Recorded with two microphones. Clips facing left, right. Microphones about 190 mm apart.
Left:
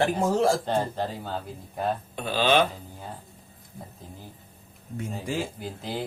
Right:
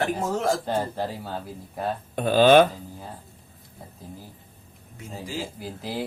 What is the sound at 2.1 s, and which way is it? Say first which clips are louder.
Speech: right 8 dB; 50° right (ahead or behind).